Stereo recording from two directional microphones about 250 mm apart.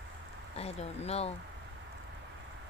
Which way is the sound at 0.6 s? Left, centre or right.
Left.